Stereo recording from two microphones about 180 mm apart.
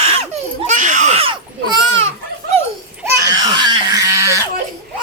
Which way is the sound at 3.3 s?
25° right (ahead or behind).